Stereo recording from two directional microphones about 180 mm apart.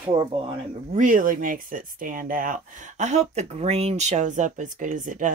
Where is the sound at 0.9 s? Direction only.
45° right (ahead or behind).